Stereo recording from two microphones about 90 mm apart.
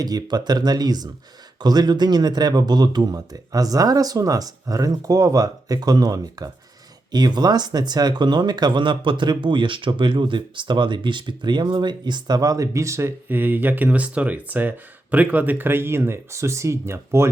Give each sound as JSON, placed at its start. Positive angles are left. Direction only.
{"t": 0.0, "sound": "speech", "side_deg": -45}